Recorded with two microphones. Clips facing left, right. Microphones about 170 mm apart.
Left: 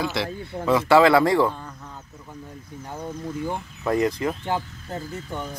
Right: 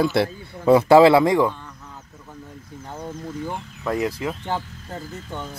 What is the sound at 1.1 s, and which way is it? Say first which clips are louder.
Speech: right 2 dB; 20° right (ahead or behind).